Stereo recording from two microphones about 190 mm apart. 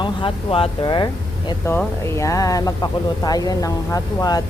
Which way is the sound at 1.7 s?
15° left (ahead or behind).